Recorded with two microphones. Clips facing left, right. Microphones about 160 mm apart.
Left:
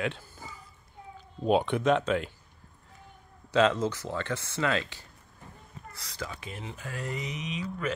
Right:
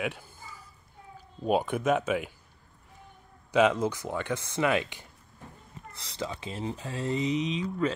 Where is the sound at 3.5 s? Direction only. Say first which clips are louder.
Right 1 dB; 15° right (ahead or behind).